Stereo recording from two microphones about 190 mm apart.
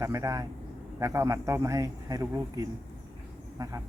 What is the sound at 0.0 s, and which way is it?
A man's voice, 15° right (ahead or behind).